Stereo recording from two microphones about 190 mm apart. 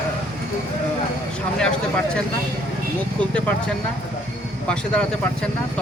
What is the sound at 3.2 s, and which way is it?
Speech, 5° left (ahead or behind).